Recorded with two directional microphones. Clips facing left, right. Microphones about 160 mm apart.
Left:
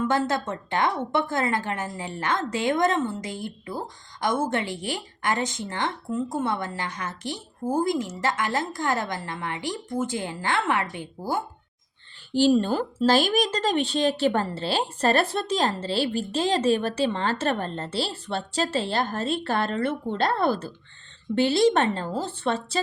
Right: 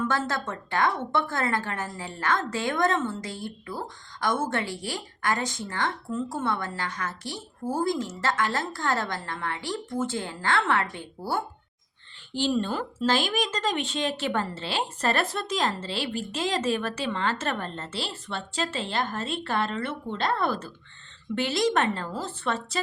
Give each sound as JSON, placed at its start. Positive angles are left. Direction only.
{"t": 0.1, "sound": "a woman's voice", "side_deg": 20}
{"t": 12.3, "sound": "a woman's voice", "side_deg": 40}